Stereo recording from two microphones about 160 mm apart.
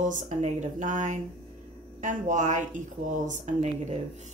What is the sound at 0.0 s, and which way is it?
Speech, 50° right (ahead or behind).